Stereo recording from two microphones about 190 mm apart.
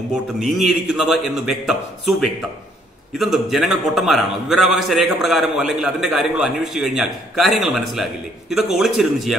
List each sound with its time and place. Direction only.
0.4 s a man's voice: centre (ahead or behind)